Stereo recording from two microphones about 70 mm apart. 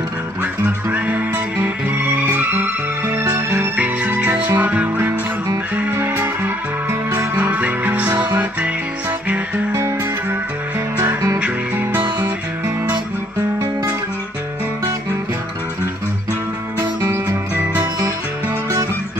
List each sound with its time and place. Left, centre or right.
0.9 s music: right
7.6 s music: right
9.7 s music: right
11.3 s music: centre